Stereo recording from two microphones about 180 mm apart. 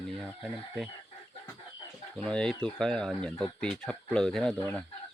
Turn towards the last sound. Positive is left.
turn(degrees=5)  # may be behind; listen again after turning